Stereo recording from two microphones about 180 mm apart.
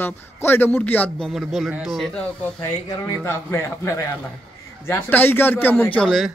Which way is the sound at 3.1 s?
15° left (ahead or behind).